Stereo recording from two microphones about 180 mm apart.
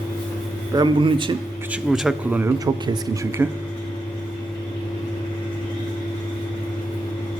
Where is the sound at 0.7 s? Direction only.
25° right (ahead or behind).